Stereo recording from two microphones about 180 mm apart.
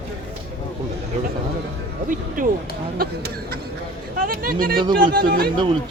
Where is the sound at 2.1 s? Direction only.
50° right (ahead or behind).